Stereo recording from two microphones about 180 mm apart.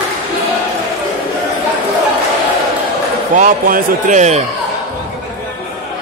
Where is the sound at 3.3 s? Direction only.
45° right (ahead or behind).